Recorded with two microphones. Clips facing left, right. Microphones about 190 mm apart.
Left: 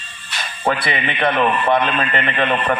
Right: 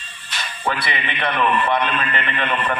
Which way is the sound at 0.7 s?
45° left (ahead or behind).